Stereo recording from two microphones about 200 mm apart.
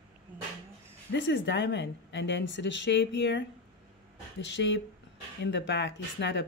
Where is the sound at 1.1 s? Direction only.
65° left (ahead or behind).